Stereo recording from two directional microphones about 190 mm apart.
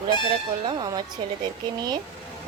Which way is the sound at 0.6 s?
25° right (ahead or behind).